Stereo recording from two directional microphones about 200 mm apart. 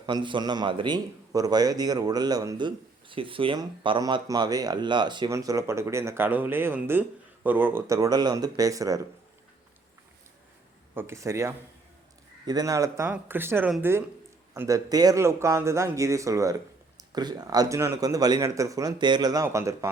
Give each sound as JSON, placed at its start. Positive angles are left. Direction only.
{"t": 0.0, "sound": "a man's voice", "side_deg": -25}
{"t": 10.9, "sound": "speech", "side_deg": -15}